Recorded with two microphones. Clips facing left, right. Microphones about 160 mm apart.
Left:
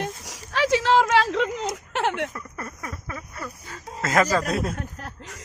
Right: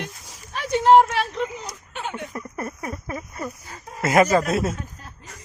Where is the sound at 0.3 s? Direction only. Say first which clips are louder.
Left 5 dB; 85° left.